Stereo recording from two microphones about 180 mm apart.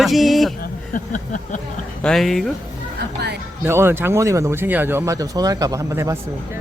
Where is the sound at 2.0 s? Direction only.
5° left (ahead or behind).